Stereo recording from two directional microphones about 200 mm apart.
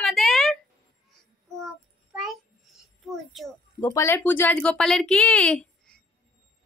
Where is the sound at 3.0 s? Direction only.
Centre (ahead or behind).